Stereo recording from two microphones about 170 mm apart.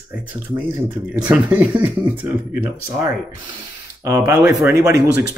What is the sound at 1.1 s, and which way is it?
Speech, 10° right (ahead or behind).